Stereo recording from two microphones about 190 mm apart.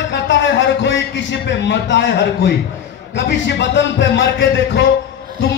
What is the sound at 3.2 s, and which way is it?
A man's voice, 65° left (ahead or behind).